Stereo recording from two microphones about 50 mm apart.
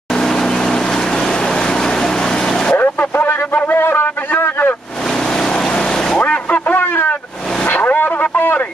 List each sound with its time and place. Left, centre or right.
0.1 s vehicle: centre
2.7 s vehicle: left
3.5 s a sound: left
5.1 s vehicle: centre
6.1 s vehicle: left
6.7 s a sound: left
7.6 s vehicle: left